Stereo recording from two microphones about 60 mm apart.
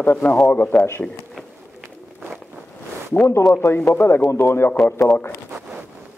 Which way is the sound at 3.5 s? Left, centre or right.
Left.